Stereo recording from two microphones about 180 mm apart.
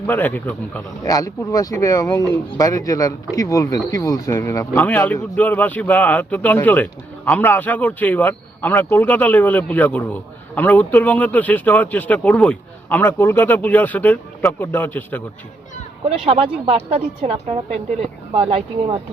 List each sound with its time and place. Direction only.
0.1 s speech: 10° left (ahead or behind)
16.0 s a woman's voice: 35° right (ahead or behind)